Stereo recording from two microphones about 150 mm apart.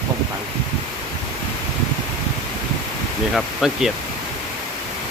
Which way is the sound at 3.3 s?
Centre (ahead or behind).